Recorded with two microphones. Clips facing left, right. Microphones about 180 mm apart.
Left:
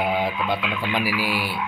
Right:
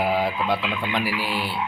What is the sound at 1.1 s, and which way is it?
Speech, 10° left (ahead or behind).